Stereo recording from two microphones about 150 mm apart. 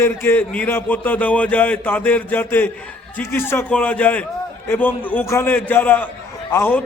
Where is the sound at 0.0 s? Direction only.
15° left (ahead or behind).